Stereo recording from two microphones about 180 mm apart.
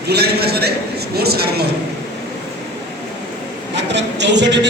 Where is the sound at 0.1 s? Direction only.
60° right (ahead or behind).